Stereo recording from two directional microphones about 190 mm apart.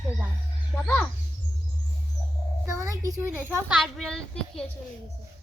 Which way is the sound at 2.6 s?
15° right (ahead or behind).